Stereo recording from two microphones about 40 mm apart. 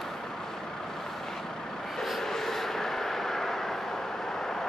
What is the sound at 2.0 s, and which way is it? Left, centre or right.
Vehicle, centre.